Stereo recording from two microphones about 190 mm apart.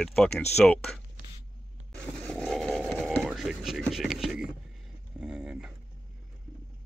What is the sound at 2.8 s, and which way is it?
Speech, 5° left (ahead or behind).